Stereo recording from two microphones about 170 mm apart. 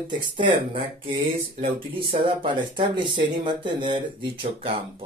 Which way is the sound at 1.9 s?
30° right (ahead or behind).